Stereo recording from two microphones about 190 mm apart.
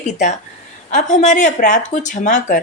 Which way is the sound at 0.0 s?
40° left (ahead or behind).